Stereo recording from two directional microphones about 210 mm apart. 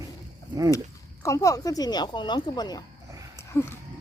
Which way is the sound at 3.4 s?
10° left (ahead or behind).